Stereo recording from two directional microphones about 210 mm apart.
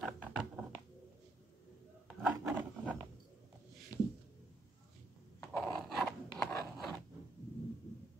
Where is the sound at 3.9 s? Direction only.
15° left (ahead or behind).